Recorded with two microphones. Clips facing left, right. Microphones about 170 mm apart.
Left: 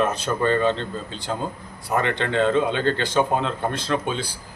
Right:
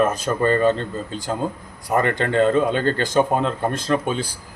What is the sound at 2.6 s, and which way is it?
Speech, 45° right (ahead or behind).